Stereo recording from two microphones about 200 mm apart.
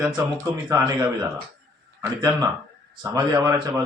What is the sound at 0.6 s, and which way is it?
Speech, 15° right (ahead or behind).